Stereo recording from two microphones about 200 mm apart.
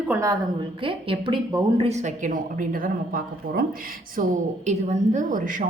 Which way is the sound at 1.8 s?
35° right (ahead or behind).